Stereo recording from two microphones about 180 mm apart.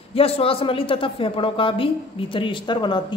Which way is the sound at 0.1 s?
30° left (ahead or behind).